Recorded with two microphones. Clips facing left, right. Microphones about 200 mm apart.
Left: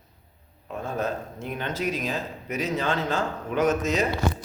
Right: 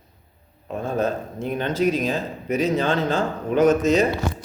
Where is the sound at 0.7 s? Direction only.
30° right (ahead or behind).